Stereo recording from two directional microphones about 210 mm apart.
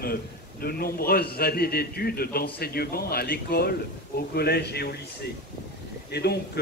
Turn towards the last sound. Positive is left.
turn(degrees=50)  # may be behind; listen again after turning